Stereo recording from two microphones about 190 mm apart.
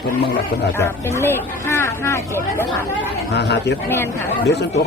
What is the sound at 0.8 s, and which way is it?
Speech, 15° left (ahead or behind).